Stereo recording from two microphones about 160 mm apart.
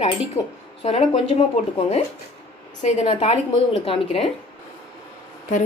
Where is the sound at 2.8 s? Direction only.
45° left (ahead or behind).